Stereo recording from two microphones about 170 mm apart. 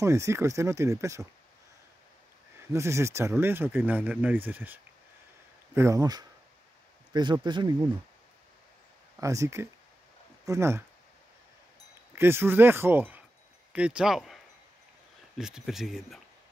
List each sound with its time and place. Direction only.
0.0 s speech: 15° right (ahead or behind)
2.7 s speech: 15° right (ahead or behind)
5.8 s speech: 20° right (ahead or behind)
9.2 s speech: 20° right (ahead or behind)
12.2 s speech: 15° right (ahead or behind)